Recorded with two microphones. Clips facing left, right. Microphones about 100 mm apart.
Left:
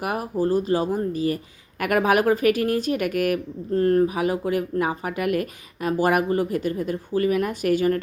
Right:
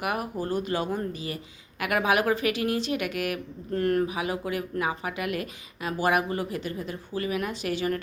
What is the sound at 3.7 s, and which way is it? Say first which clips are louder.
Speech: left 6 dB; 30° left (ahead or behind).